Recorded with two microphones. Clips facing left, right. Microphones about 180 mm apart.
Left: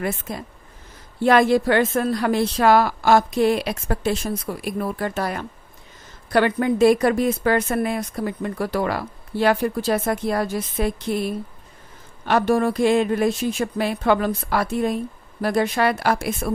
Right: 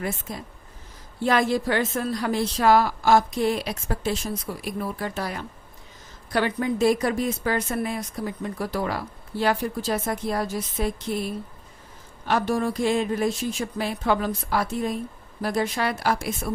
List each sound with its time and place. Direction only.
0.0 s a woman's voice: 65° left (ahead or behind)